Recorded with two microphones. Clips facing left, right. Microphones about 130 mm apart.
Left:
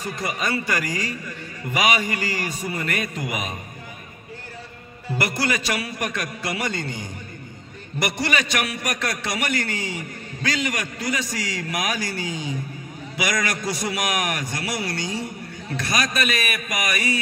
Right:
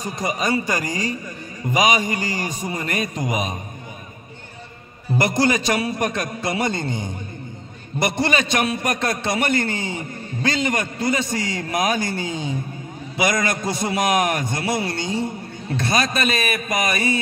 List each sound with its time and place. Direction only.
0.0 s a man's voice: 20° right (ahead or behind)
5.1 s a man's voice: 20° right (ahead or behind)